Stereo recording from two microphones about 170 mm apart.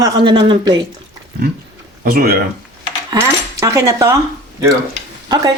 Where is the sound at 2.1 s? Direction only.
60° right (ahead or behind).